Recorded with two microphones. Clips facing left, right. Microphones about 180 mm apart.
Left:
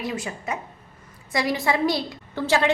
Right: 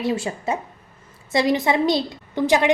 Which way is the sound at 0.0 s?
30° right (ahead or behind).